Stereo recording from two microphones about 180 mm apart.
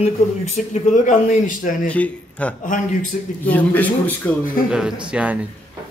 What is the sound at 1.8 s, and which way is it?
Speech, 10° left (ahead or behind).